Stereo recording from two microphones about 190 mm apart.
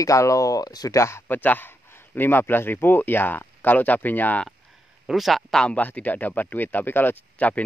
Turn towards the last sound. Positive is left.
turn(degrees=10)  # may be behind; listen again after turning